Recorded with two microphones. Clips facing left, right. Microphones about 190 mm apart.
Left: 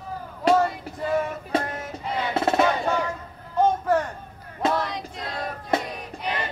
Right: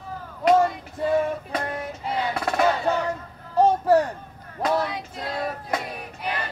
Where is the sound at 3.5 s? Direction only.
35° right (ahead or behind).